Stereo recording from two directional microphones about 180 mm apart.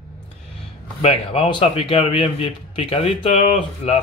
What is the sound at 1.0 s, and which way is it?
A man's voice, 30° left (ahead or behind).